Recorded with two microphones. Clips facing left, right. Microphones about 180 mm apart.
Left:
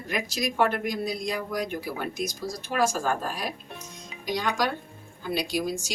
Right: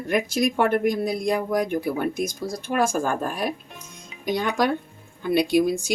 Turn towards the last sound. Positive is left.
turn(degrees=-55)  # may be behind; listen again after turning